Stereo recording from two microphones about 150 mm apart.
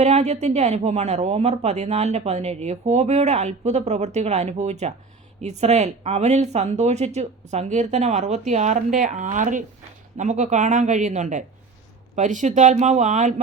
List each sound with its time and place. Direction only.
0.0 s a woman's voice: 45° right (ahead or behind)